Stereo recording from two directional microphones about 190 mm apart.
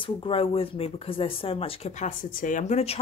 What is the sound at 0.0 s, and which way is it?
Speech, 30° left (ahead or behind).